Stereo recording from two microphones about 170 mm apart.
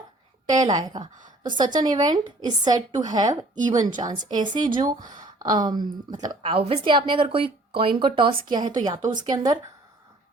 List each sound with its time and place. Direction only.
0.6 s a woman's voice: 25° right (ahead or behind)